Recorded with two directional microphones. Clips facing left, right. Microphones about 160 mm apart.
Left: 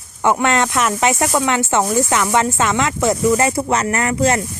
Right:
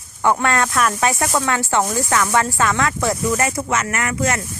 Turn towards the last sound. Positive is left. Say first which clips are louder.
# left 5 dB
turn(degrees=30)  # may be behind; listen again after turning